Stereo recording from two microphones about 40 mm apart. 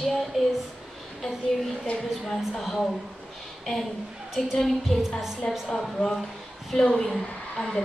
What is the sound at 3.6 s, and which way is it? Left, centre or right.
A woman's voice, centre.